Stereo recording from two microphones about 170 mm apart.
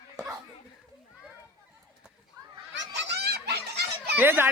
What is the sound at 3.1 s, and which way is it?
Fowl, 70° right (ahead or behind).